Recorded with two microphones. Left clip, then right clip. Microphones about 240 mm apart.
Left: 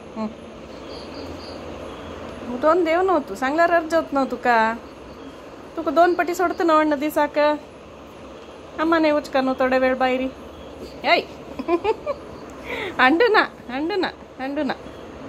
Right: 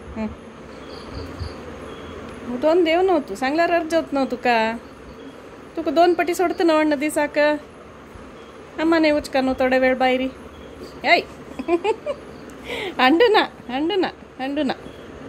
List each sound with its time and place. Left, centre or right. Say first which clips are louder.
2.6 s a woman's voice: right 1 dB; right
5.9 s a woman's voice: even; right
8.7 s a woman's voice: right 1 dB; right